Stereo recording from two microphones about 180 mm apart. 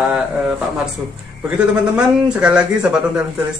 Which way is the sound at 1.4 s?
5° right (ahead or behind).